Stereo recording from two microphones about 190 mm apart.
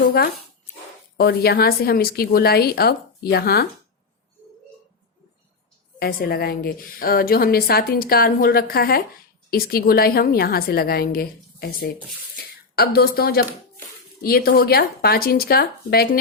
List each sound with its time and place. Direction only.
0.0 s a woman's voice: 50° left (ahead or behind)
6.0 s a woman's voice: 50° left (ahead or behind)